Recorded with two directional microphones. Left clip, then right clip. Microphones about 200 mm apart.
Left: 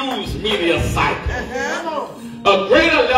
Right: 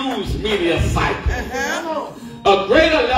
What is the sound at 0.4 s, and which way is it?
Speech, 35° left (ahead or behind).